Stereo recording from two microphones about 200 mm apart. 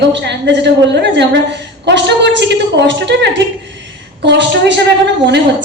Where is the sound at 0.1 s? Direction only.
60° right (ahead or behind).